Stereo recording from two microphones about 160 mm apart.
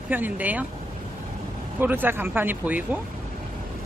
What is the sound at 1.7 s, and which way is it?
Speech, 10° right (ahead or behind).